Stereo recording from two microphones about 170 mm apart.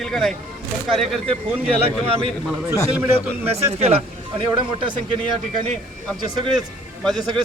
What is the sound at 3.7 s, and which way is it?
Speech, 40° right (ahead or behind).